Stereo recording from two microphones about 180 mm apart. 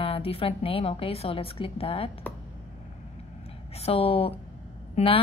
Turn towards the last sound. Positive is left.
turn(degrees=30)  # may be behind; listen again after turning